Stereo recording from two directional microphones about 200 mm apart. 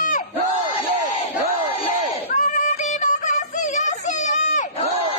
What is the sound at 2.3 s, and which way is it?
Music, 35° left (ahead or behind).